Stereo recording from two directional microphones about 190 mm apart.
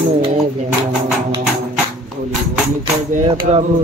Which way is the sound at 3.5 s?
35° right (ahead or behind).